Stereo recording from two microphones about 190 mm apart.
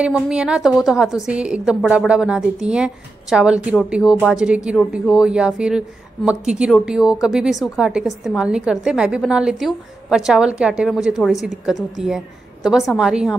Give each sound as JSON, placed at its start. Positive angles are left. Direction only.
{"t": 0.0, "sound": "speech", "side_deg": -5}